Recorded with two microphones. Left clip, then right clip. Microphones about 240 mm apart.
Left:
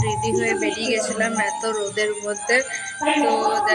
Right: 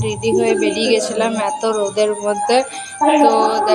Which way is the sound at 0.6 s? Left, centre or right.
Centre.